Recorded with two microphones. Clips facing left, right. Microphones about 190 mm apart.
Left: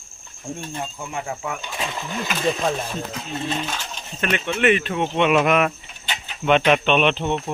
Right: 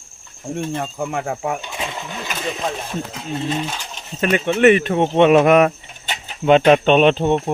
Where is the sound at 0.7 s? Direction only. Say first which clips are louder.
Right 6 dB; 65° right (ahead or behind).